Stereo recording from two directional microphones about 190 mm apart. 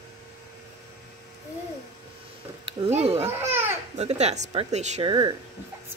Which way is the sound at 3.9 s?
35° right (ahead or behind).